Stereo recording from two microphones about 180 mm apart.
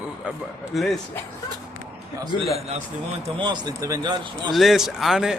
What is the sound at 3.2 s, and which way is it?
Speech, 25° right (ahead or behind).